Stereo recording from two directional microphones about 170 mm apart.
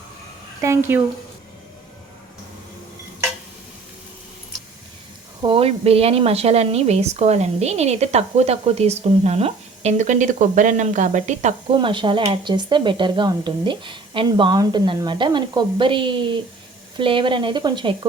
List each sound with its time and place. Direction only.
0.6 s a woman's voice: 15° right (ahead or behind)
5.4 s speech: 30° right (ahead or behind)
11.8 s speech: 30° right (ahead or behind)